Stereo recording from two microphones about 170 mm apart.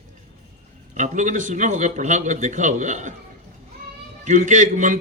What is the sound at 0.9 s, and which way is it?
A man's voice, 45° right (ahead or behind).